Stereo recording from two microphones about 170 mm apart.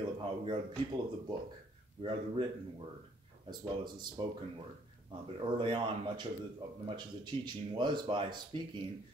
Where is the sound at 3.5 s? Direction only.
25° right (ahead or behind).